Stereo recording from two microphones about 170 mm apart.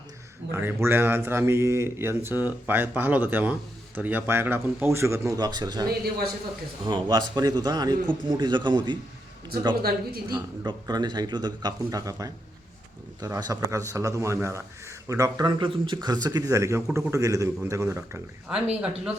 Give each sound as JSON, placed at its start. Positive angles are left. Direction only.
{"t": 0.5, "sound": "a man's voice", "side_deg": -15}
{"t": 9.8, "sound": "speech", "side_deg": -65}
{"t": 10.3, "sound": "a man's voice", "side_deg": -25}